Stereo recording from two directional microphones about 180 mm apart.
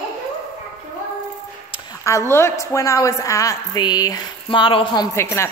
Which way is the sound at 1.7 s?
20° left (ahead or behind).